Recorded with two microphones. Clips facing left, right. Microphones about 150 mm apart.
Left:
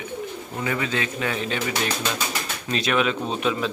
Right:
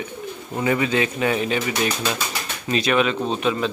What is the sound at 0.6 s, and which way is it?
Speech, 20° right (ahead or behind).